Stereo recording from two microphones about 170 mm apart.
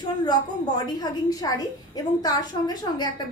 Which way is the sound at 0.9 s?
25° left (ahead or behind).